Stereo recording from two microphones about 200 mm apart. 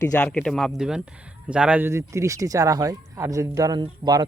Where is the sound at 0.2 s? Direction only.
5° left (ahead or behind).